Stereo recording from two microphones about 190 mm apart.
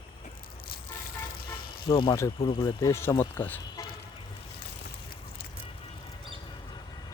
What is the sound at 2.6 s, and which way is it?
Speech, 15° left (ahead or behind).